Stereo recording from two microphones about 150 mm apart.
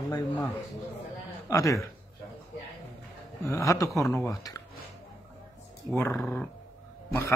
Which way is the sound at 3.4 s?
20° left (ahead or behind).